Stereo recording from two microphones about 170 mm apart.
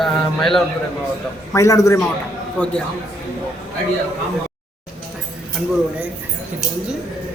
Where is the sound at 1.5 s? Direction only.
20° left (ahead or behind).